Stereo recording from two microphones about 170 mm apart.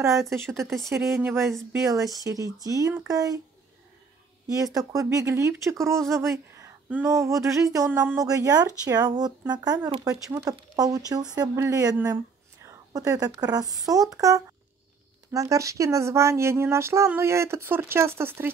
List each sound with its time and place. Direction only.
0.0 s speech: 15° right (ahead or behind)
4.7 s speech: 20° right (ahead or behind)